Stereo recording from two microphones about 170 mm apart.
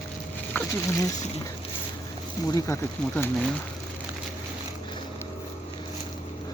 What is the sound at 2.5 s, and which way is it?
Speech, 20° left (ahead or behind).